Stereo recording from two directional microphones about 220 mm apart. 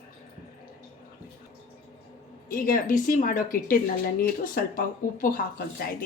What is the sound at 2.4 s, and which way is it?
A woman's voice, 40° left (ahead or behind).